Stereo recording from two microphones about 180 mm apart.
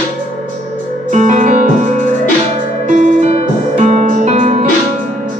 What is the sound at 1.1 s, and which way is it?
Music, 45° right (ahead or behind).